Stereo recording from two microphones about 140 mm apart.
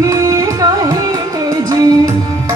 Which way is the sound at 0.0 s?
25° right (ahead or behind).